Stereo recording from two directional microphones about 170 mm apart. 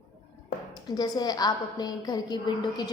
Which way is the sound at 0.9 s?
25° left (ahead or behind).